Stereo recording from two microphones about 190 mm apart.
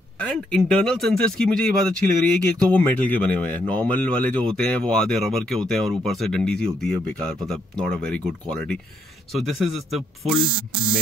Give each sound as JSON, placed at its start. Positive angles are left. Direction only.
{"t": 0.2, "sound": "speech", "side_deg": 5}
{"t": 10.4, "sound": "hum", "side_deg": -25}